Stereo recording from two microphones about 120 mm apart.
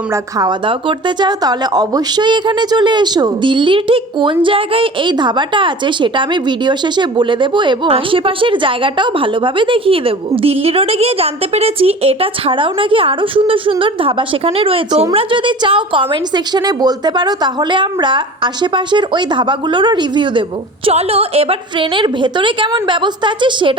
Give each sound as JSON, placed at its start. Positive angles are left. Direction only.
{"t": 0.1, "sound": "a woman's voice", "side_deg": -35}
{"t": 20.8, "sound": "speech", "side_deg": -55}